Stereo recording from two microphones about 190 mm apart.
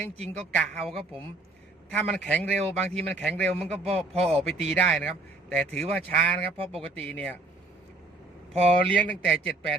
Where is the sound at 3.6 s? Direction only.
35° right (ahead or behind).